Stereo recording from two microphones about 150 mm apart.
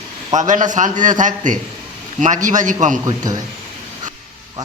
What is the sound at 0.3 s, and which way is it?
A man's voice, 55° right (ahead or behind).